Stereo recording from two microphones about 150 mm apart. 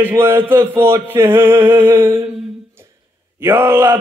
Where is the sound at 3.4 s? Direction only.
15° right (ahead or behind).